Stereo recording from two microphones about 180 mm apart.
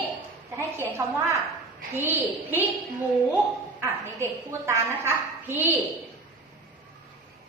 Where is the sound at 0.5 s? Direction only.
15° right (ahead or behind).